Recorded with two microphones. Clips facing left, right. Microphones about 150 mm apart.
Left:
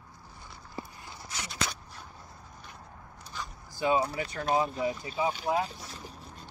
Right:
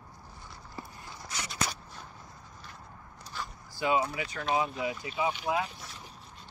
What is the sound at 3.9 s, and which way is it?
Speech, 35° left (ahead or behind).